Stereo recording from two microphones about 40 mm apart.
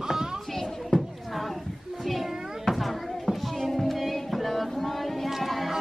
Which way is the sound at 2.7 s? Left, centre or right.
Centre.